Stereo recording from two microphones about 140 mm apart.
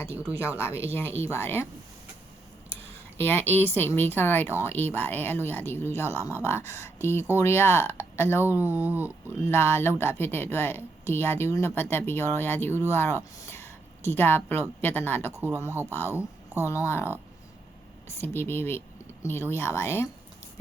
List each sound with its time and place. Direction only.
0.4 s speech: 10° right (ahead or behind)
1.3 s speech: 15° left (ahead or behind)
3.2 s speech: 15° left (ahead or behind)
8.4 s speech: 15° right (ahead or behind)
9.4 s speech: 15° left (ahead or behind)
15.3 s speech: 15° right (ahead or behind)
15.9 s speech: 15° left (ahead or behind)
18.2 s speech: 15° left (ahead or behind)